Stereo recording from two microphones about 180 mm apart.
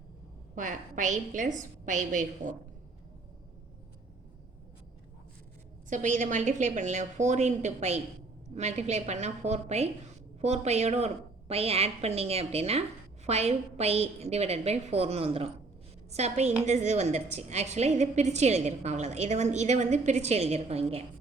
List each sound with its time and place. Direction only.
0.5 s a woman's voice: 45° right (ahead or behind)
5.9 s a woman's voice: 45° right (ahead or behind)